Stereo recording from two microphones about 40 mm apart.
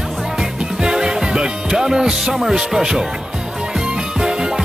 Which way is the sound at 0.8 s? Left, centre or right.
Centre.